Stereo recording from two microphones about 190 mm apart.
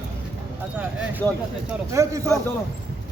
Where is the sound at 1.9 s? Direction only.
15° right (ahead or behind).